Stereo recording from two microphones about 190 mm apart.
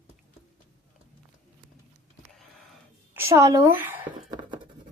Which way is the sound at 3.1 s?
15° right (ahead or behind).